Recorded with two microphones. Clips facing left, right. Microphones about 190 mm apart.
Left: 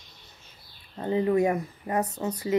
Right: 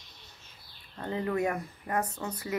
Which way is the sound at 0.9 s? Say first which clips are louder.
Left 7 dB; 20° left (ahead or behind).